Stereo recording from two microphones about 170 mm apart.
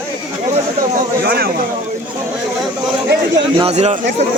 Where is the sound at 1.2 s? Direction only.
65° right (ahead or behind).